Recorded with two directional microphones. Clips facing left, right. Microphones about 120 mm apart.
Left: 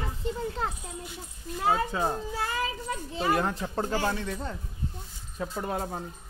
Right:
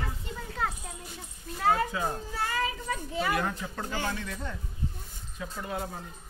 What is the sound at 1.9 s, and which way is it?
Speech, 25° left (ahead or behind).